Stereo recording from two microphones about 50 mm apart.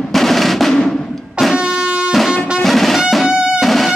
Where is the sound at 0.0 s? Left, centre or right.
Centre.